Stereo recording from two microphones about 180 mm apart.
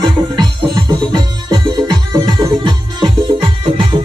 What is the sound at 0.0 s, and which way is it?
Music, 25° right (ahead or behind).